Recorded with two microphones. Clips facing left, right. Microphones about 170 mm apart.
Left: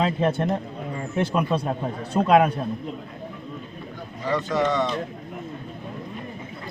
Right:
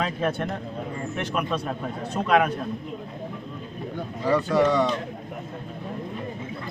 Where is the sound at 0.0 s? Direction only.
30° left (ahead or behind).